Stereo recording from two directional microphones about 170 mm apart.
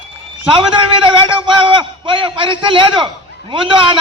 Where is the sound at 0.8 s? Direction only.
30° right (ahead or behind).